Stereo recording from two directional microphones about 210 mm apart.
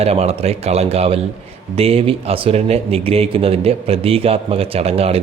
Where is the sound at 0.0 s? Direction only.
30° right (ahead or behind).